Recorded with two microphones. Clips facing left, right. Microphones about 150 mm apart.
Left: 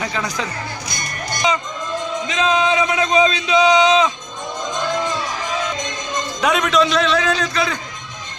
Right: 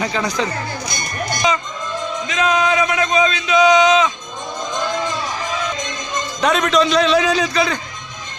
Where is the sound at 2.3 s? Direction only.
25° left (ahead or behind).